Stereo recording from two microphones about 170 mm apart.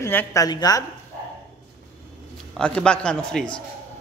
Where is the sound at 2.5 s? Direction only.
5° left (ahead or behind).